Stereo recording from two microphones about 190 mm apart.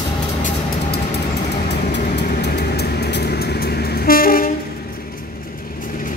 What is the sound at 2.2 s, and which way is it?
Vehicle, 60° left (ahead or behind).